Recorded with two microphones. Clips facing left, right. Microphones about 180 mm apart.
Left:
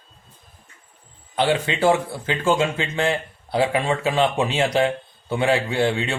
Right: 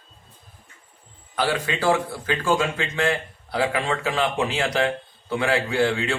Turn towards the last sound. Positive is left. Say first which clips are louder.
# even
turn(degrees=25)  # may be behind; listen again after turning